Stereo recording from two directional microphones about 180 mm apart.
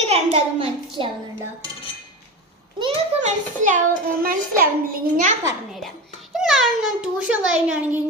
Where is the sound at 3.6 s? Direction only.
45° right (ahead or behind).